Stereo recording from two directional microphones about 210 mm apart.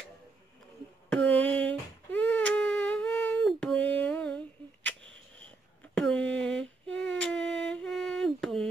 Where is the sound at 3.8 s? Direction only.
10° left (ahead or behind).